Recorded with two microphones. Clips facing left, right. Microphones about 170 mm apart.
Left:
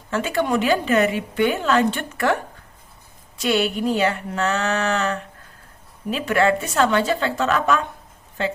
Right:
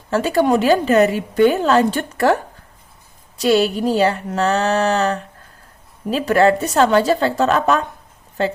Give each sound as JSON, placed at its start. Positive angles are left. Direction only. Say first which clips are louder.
{"t": 0.1, "sound": "a woman's voice", "louder": "right 6 dB", "side_deg": -35}